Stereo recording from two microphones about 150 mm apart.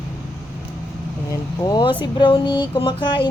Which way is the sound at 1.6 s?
30° left (ahead or behind).